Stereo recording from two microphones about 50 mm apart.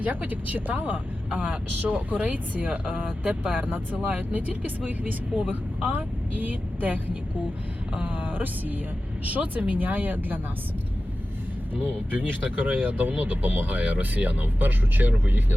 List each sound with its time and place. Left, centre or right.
0.0 s speech: right
5.9 s speech: right
11.7 s speech: right